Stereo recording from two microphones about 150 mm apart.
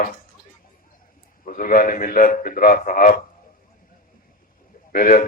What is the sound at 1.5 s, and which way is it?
A man's voice, 65° left (ahead or behind).